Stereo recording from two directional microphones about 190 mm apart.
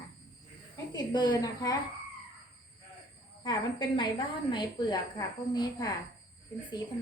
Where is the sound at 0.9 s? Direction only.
20° left (ahead or behind).